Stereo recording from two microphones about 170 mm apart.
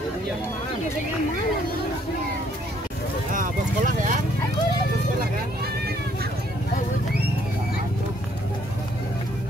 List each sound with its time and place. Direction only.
3.3 s horse: 50° right (ahead or behind)